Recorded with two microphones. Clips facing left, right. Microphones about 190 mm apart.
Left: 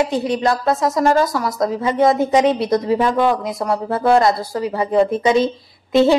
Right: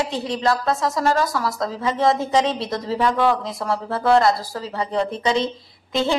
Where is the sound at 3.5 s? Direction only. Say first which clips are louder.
Left 4 dB; 20° left (ahead or behind).